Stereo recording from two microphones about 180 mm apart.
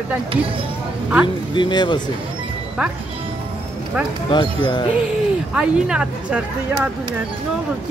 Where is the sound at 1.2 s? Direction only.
25° left (ahead or behind).